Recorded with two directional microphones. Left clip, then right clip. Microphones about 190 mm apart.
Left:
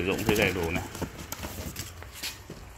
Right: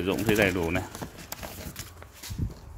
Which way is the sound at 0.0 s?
40° right (ahead or behind).